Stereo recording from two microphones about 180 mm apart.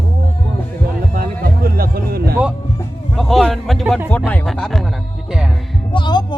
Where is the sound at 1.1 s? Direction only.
55° right (ahead or behind).